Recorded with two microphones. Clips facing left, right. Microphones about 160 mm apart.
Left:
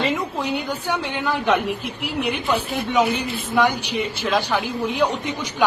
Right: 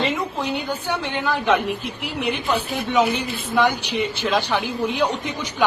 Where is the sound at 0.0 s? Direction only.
10° left (ahead or behind).